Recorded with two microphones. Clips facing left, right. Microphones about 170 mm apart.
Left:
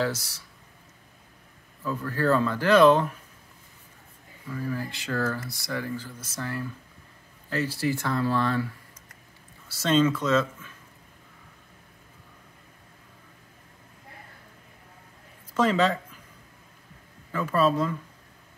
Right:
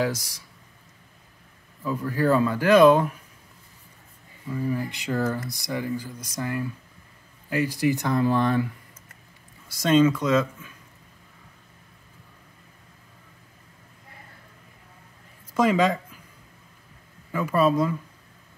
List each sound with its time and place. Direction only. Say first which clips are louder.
0.0 s speech: right 2 dB; 15° right (ahead or behind)
1.8 s speech: right 3 dB; 10° right (ahead or behind)
4.5 s speech: right 4 dB; 15° right (ahead or behind)
9.7 s speech: right 3 dB; 10° right (ahead or behind)
15.5 s speech: right 2 dB; 10° right (ahead or behind)
17.3 s speech: right 2 dB; 10° right (ahead or behind)